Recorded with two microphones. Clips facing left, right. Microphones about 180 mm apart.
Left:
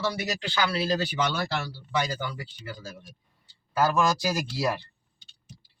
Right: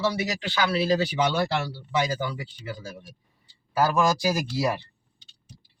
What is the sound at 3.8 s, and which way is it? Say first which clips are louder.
Speech: right 2 dB; 10° right (ahead or behind).